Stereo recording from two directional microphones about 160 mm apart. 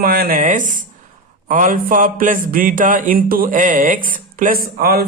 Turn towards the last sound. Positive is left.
turn(degrees=-75)  # may be behind; listen again after turning